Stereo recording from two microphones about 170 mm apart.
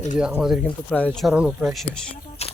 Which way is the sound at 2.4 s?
35° left (ahead or behind).